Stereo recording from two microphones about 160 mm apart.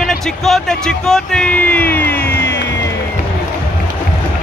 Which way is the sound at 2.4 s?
90° left.